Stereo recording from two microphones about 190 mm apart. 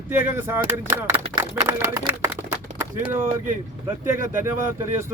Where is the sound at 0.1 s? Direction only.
10° right (ahead or behind).